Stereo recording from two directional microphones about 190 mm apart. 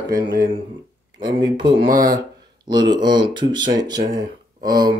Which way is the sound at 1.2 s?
20° right (ahead or behind).